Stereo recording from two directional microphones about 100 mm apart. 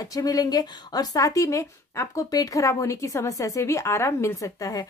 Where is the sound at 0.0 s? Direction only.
35° left (ahead or behind).